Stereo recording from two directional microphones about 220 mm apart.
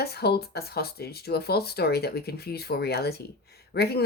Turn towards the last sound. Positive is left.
turn(degrees=45)  # may be behind; listen again after turning